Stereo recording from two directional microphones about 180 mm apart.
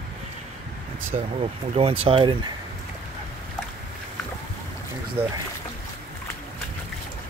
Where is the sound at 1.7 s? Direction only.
35° right (ahead or behind).